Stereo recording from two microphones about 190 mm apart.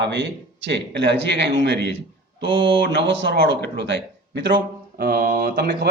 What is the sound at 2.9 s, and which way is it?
A man's voice, 70° right (ahead or behind).